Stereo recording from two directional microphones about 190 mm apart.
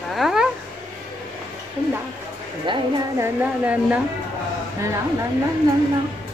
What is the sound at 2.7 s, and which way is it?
Speech, 25° right (ahead or behind).